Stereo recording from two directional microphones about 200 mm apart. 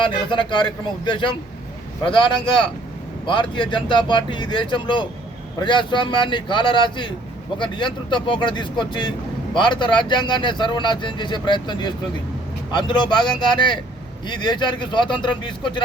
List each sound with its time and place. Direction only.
0.0 s speech: 25° left (ahead or behind)